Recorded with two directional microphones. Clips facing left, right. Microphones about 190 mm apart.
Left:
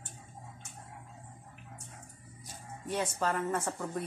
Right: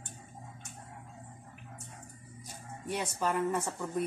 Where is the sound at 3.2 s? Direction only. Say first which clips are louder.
Right 3 dB; 10° right (ahead or behind).